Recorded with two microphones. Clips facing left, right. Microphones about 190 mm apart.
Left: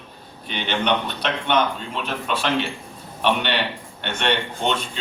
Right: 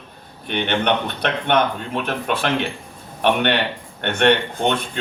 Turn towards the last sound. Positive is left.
turn(degrees=-55)  # may be behind; listen again after turning